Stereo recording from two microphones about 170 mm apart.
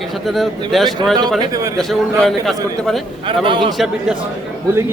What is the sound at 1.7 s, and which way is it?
Speech, centre (ahead or behind).